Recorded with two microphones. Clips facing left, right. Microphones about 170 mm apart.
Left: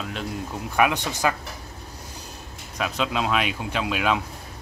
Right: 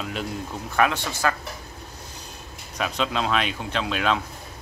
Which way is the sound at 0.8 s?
15° left (ahead or behind).